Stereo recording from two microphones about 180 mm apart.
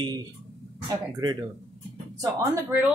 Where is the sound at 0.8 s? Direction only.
20° right (ahead or behind).